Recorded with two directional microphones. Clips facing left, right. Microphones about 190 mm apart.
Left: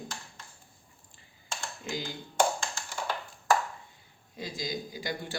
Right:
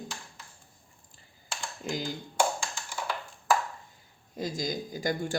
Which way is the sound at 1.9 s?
45° right (ahead or behind).